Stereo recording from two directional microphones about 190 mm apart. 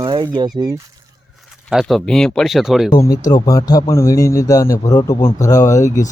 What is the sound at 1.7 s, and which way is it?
Speech, centre (ahead or behind).